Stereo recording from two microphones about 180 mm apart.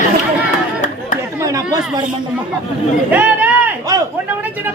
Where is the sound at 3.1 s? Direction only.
10° right (ahead or behind).